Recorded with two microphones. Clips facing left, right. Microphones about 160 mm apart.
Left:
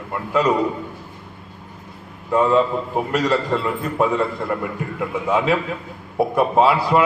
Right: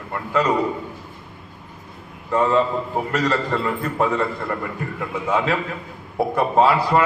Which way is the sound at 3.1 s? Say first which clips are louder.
Left 2 dB; 10° left (ahead or behind).